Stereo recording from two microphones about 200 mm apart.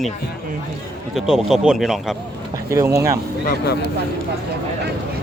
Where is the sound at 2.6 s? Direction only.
15° right (ahead or behind).